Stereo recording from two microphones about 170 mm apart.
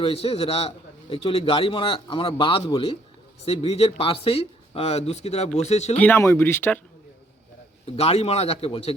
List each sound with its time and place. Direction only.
0.0 s speech: 35° left (ahead or behind)
6.0 s speech: 15° left (ahead or behind)
7.9 s speech: 35° left (ahead or behind)